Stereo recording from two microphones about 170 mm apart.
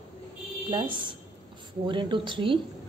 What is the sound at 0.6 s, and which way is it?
A woman's voice, 25° right (ahead or behind).